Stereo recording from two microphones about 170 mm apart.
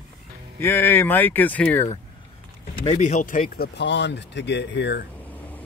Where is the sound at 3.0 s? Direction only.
45° left (ahead or behind); by 5.0 s 90° left.